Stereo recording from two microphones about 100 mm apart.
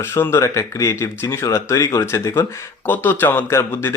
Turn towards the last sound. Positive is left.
turn(degrees=25)  # may be behind; listen again after turning